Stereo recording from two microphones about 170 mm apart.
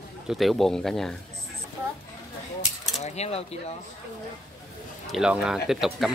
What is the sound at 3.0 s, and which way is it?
Speech, 40° left (ahead or behind).